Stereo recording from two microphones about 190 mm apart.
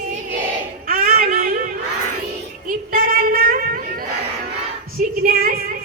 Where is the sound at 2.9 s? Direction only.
50° right (ahead or behind).